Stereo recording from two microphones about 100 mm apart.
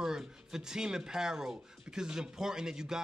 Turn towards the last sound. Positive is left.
turn(degrees=-5)  # may be behind; listen again after turning